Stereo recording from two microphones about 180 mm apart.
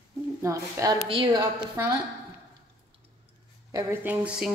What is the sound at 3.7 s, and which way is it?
Speech, 10° right (ahead or behind).